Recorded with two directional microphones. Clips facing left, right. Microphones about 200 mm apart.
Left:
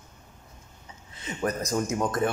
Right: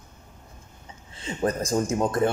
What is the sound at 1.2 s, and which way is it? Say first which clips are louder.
A man's voice: right 3 dB; 30° right (ahead or behind).